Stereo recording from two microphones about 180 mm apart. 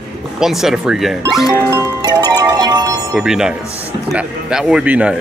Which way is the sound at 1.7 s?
20° right (ahead or behind).